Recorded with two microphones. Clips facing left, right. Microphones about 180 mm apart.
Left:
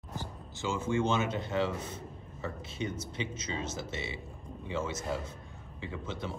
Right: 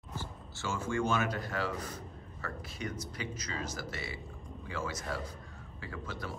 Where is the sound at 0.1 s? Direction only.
15° left (ahead or behind).